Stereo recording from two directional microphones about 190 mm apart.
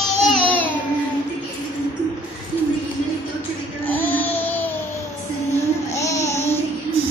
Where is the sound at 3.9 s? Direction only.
10° left (ahead or behind).